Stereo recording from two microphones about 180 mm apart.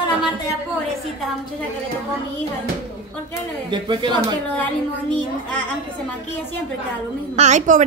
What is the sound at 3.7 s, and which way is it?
Speech, 25° right (ahead or behind).